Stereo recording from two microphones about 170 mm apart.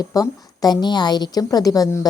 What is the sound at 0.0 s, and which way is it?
A woman's voice, 20° left (ahead or behind).